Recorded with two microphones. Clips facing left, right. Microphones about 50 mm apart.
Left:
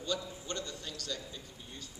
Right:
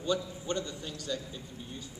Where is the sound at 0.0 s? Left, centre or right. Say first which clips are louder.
Right 5 dB; centre.